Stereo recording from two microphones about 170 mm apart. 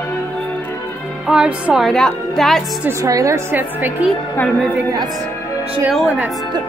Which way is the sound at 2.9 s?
20° right (ahead or behind).